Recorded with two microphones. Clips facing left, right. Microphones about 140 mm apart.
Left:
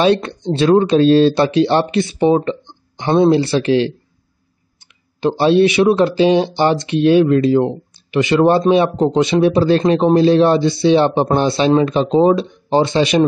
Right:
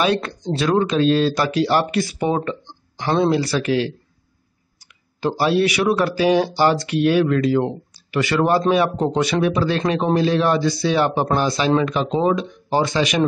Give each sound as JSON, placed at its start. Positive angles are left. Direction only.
{"t": 0.0, "sound": "speech", "side_deg": 30}